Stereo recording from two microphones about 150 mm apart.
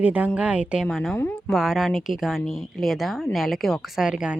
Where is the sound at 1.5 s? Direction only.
Centre (ahead or behind).